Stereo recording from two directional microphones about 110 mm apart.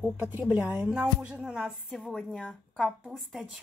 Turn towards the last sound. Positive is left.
turn(degrees=0)  # may be behind; listen again after turning